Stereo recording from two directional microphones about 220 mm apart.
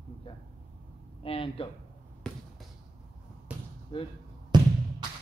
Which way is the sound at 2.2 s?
5° left (ahead or behind).